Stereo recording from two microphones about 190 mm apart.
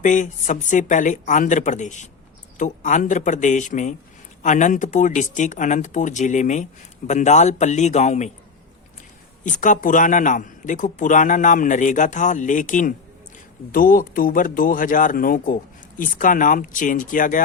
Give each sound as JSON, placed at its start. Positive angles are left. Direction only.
{"t": 0.0, "sound": "speech", "side_deg": 40}
{"t": 9.4, "sound": "speech", "side_deg": 45}